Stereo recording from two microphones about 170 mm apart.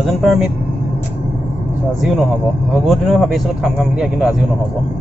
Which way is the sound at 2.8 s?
Centre (ahead or behind).